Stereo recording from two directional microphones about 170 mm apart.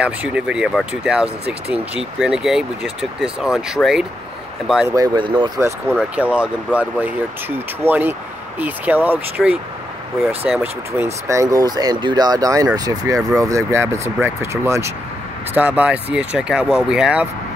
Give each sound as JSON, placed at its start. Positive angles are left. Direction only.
{"t": 0.0, "sound": "speech", "side_deg": -5}
{"t": 4.8, "sound": "speech", "side_deg": -20}
{"t": 6.1, "sound": "speech", "side_deg": -5}